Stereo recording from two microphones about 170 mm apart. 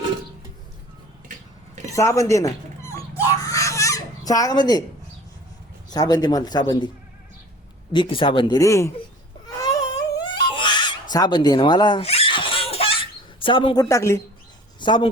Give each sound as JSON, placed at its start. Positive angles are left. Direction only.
{"t": 1.9, "sound": "speech", "side_deg": 20}
{"t": 3.5, "sound": "fowl", "side_deg": 20}
{"t": 5.9, "sound": "a man's voice", "side_deg": 20}
{"t": 7.9, "sound": "a man's voice", "side_deg": 30}
{"t": 9.6, "sound": "baby cry", "side_deg": 20}
{"t": 11.1, "sound": "a sound", "side_deg": 25}
{"t": 13.8, "sound": "speech", "side_deg": 15}
{"t": 14.8, "sound": "a man's voice", "side_deg": 25}